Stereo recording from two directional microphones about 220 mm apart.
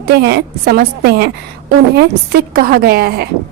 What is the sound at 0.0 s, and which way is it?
A woman's voice, 50° right (ahead or behind).